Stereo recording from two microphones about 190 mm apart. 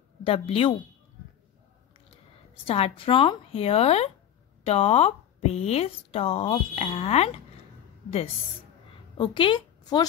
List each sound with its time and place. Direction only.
0.2 s a woman's voice: 30° left (ahead or behind)
2.5 s speech: 30° left (ahead or behind)
9.2 s a woman's voice: 25° left (ahead or behind)